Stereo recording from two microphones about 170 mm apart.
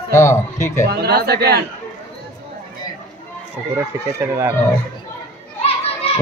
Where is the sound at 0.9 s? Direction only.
65° right (ahead or behind).